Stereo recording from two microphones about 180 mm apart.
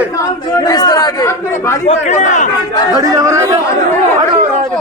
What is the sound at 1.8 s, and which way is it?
Speech, 40° left (ahead or behind).